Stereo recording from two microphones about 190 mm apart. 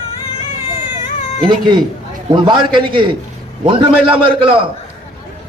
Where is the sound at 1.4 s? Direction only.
25° right (ahead or behind).